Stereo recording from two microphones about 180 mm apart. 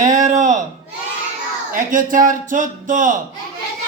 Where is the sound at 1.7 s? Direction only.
50° right (ahead or behind).